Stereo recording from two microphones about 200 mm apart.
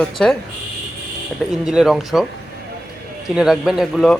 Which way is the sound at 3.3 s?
5° right (ahead or behind).